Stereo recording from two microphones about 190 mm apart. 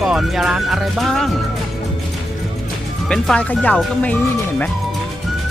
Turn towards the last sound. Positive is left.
turn(degrees=10)  # may be behind; listen again after turning